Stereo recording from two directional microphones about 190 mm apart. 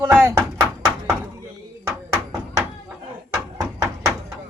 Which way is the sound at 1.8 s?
15° right (ahead or behind).